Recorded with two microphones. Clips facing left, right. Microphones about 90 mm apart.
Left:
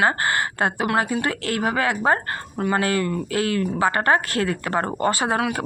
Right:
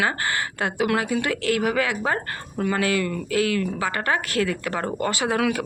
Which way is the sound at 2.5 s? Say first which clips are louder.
Left 2 dB; 25° left (ahead or behind).